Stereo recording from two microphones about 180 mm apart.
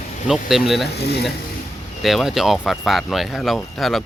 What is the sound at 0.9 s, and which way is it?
Speech, 65° left (ahead or behind).